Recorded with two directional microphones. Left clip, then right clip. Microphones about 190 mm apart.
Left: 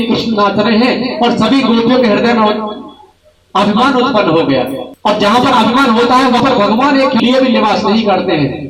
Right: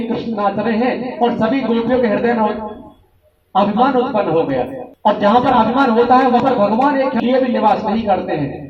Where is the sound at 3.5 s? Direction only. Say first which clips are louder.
Left 3 dB; 20° left (ahead or behind).